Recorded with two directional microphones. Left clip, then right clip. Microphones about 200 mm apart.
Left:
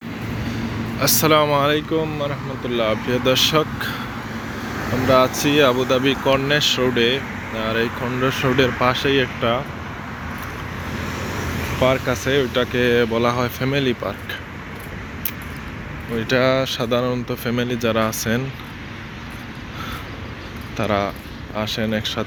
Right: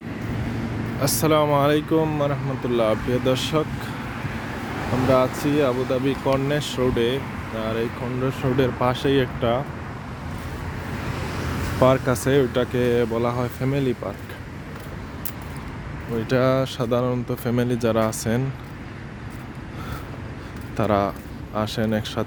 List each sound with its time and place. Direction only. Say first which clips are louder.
0.9 s speech: left 4 dB; 15° right (ahead or behind)
3.1 s speech: left 5 dB; 10° right (ahead or behind)
5.1 s speech: left 5 dB; 10° right (ahead or behind)
11.8 s speech: even; 25° right (ahead or behind)
12.7 s speech: left 6 dB; 15° right (ahead or behind)
16.1 s speech: left 3 dB; 20° right (ahead or behind)
20.7 s speech: even; 30° right (ahead or behind)